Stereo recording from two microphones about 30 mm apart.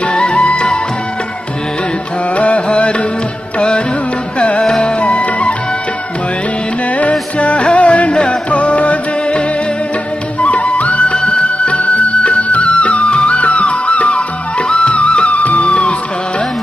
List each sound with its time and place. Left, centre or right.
0.0 s music: left
2.3 s music: left
4.6 s music: left
5.0 s music: left
7.0 s music: left
8.1 s music: left
8.5 s music: left
10.4 s music: left
11.1 s music: left
15.3 s music: left
15.6 s music: left